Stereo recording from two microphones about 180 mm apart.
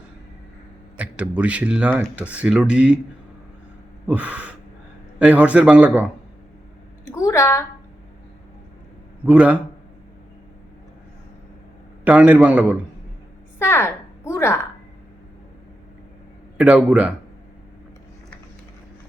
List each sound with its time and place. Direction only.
0.9 s speech: 5° right (ahead or behind)
4.0 s speech: 10° right (ahead or behind)
7.1 s a sound: 15° left (ahead or behind)
9.2 s speech: 10° right (ahead or behind)
12.0 s speech: 5° right (ahead or behind)
13.6 s a sound: 15° left (ahead or behind)
16.6 s speech: 5° right (ahead or behind)